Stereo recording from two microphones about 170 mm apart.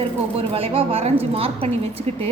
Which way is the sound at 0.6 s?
35° right (ahead or behind).